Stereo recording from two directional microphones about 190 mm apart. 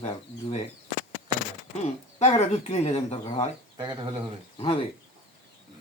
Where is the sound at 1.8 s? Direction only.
35° left (ahead or behind).